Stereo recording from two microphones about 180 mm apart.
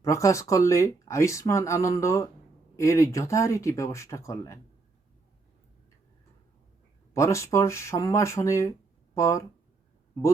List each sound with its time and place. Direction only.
0.0 s speech: 15° left (ahead or behind)
7.1 s speech: 15° left (ahead or behind)